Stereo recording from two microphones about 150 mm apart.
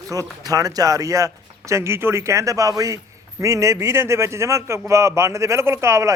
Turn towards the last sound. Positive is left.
turn(degrees=-20)  # may be behind; listen again after turning